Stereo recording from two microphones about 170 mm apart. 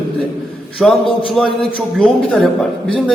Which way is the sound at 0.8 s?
Centre (ahead or behind).